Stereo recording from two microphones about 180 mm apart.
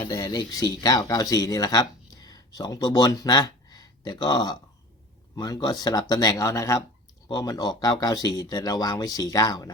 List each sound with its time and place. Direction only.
0.1 s speech: 20° left (ahead or behind)